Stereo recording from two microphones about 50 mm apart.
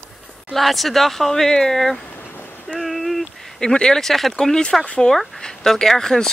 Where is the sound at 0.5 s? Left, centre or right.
Centre.